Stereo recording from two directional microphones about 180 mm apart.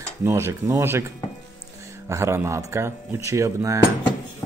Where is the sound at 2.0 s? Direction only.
15° right (ahead or behind).